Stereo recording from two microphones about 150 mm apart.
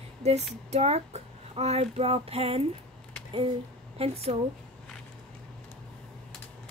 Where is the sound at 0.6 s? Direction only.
45° right (ahead or behind).